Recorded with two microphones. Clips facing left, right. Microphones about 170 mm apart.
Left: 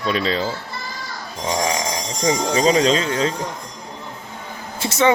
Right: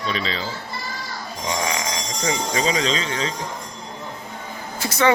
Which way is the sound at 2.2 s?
35° left (ahead or behind).